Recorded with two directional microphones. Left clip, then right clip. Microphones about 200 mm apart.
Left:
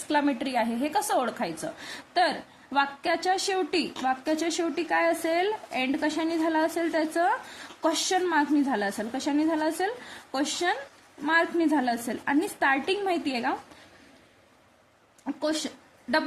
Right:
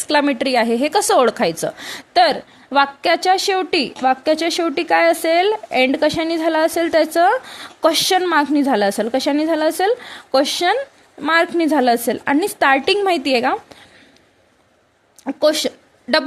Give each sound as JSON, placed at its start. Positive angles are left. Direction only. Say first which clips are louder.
{"t": 0.1, "sound": "a woman's voice", "louder": "right 10 dB", "side_deg": -45}
{"t": 15.2, "sound": "a woman's voice", "louder": "right 13 dB", "side_deg": -40}